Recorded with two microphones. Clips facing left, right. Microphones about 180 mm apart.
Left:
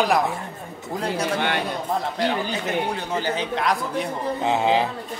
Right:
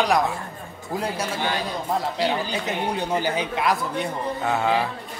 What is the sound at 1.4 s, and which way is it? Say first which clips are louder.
Speech: left 2 dB; 60° left (ahead or behind).